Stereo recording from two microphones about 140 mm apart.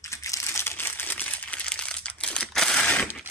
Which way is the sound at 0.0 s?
20° left (ahead or behind).